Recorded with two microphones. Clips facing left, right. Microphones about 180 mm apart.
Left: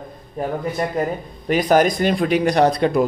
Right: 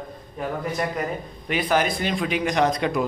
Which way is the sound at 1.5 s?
45° left (ahead or behind).